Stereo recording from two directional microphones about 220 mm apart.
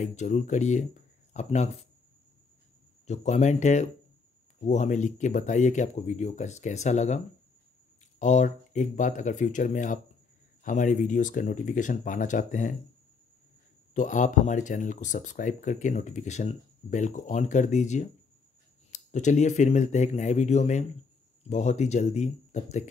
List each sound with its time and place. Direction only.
0.0 s speech: 30° left (ahead or behind)
3.1 s speech: 30° left (ahead or behind)
8.2 s speech: 35° left (ahead or behind)
13.9 s speech: 35° left (ahead or behind)